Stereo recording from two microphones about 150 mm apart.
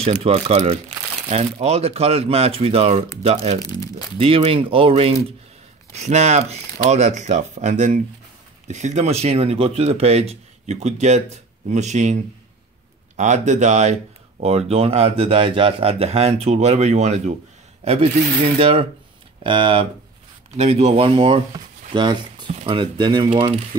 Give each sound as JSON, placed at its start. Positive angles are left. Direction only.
{"t": 0.0, "sound": "speech", "side_deg": -45}
{"t": 3.5, "sound": "speech", "side_deg": 25}
{"t": 4.2, "sound": "speech", "side_deg": -40}
{"t": 5.9, "sound": "speech", "side_deg": -50}
{"t": 20.5, "sound": "speech", "side_deg": -45}
{"t": 22.5, "sound": "speech", "side_deg": -45}
{"t": 22.8, "sound": "speech", "side_deg": -30}